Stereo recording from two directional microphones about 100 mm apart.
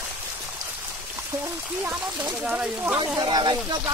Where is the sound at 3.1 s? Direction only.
50° right (ahead or behind).